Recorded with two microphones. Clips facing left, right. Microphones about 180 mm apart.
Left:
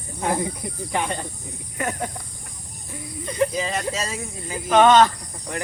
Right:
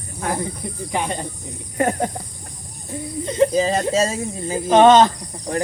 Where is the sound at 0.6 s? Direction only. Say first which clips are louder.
Right 2 dB; centre (ahead or behind).